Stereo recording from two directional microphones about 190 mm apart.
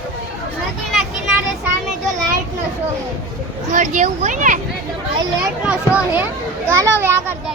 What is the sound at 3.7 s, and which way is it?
Speech, 40° right (ahead or behind).